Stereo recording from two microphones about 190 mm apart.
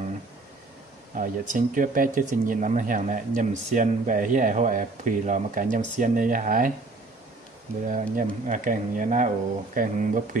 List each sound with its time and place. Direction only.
1.1 s speech: 45° right (ahead or behind)
7.9 s speech: 45° right (ahead or behind)